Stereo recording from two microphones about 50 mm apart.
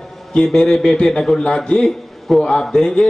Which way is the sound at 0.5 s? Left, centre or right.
Centre.